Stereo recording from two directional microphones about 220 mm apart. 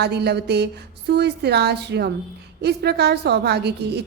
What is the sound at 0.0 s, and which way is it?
A woman's voice, 50° right (ahead or behind).